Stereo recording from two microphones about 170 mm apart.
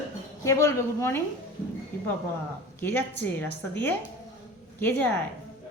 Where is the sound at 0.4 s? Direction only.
20° left (ahead or behind).